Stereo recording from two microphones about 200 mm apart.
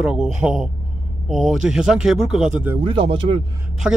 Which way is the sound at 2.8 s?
25° right (ahead or behind).